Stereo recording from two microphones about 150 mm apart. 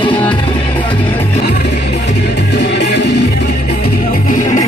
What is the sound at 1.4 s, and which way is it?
Music, 90° left.